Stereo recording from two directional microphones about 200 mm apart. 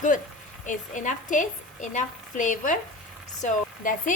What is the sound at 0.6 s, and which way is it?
A woman's voice, 40° left (ahead or behind).